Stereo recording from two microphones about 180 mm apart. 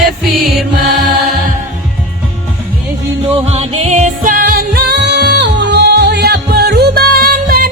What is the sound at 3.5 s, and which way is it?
Music, 35° right (ahead or behind).